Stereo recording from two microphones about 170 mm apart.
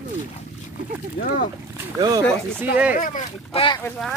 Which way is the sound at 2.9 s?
50° left (ahead or behind).